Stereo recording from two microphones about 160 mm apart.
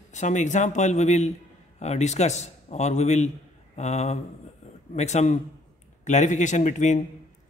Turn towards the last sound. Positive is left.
turn(degrees=50)  # may be behind; listen again after turning